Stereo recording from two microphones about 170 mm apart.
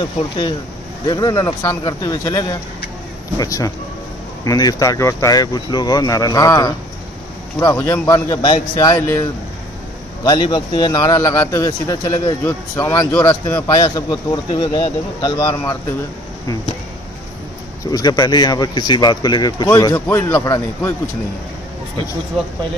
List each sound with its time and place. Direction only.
1.0 s a man's voice: 25° left (ahead or behind)
10.2 s a man's voice: 25° left (ahead or behind)
17.9 s a man's voice: 25° left (ahead or behind)